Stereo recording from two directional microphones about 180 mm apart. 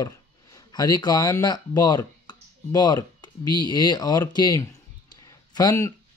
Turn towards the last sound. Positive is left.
turn(degrees=15)  # may be behind; listen again after turning